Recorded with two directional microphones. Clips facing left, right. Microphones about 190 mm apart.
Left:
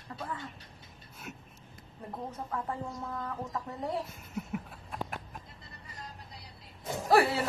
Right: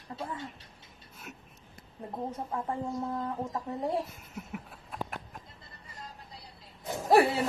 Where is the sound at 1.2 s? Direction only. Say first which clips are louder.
Left 2 dB; centre (ahead or behind).